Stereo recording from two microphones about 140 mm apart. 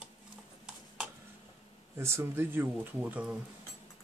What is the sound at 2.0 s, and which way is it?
Speech, 20° right (ahead or behind).